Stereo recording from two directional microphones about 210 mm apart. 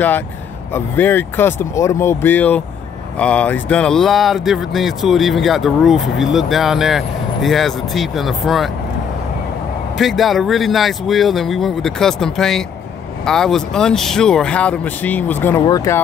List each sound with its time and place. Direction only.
0.7 s speech: 10° left (ahead or behind)
9.9 s speech: centre (ahead or behind); by 16.0 s 15° left (ahead or behind)